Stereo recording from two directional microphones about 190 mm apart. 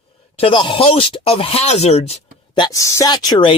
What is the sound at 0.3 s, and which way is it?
Speech, 25° left (ahead or behind).